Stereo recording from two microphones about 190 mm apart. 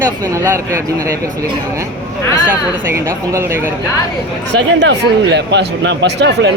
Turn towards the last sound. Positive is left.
turn(degrees=-65)  # may be behind; listen again after turning